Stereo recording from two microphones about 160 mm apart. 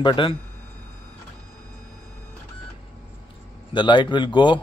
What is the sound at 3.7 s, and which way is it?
Speech, 30° left (ahead or behind).